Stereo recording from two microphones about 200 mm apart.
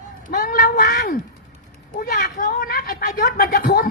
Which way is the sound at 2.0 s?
50° left (ahead or behind).